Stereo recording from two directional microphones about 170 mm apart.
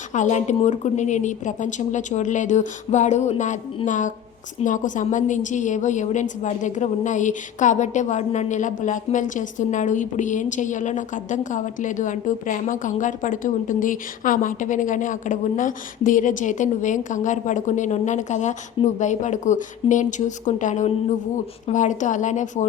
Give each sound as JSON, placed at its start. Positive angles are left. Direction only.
{"t": 0.1, "sound": "a woman's voice", "side_deg": 45}